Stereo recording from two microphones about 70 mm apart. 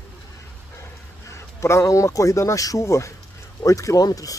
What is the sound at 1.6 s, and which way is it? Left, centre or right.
Speech, left.